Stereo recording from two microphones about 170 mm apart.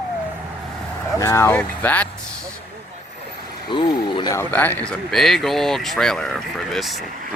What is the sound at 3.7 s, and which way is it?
Speech, 30° left (ahead or behind).